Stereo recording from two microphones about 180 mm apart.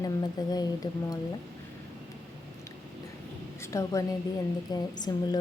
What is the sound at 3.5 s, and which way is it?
A woman's voice, 15° left (ahead or behind).